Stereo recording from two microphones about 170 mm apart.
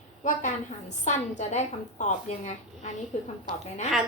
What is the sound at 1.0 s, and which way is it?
A woman's voice, 45° left (ahead or behind).